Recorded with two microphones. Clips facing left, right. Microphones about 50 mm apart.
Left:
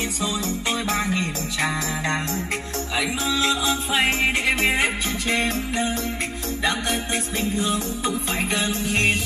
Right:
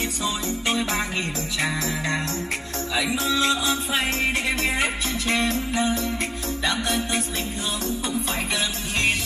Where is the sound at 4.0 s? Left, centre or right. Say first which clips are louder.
Left 6 dB; left.